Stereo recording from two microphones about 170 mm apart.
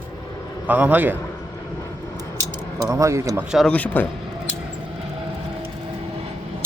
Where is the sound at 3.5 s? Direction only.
Centre (ahead or behind).